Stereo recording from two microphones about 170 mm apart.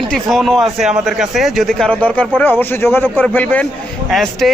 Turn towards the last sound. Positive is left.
turn(degrees=0)  # may be behind; listen again after turning